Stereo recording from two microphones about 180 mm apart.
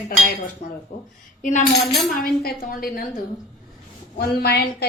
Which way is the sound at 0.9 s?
55° left (ahead or behind).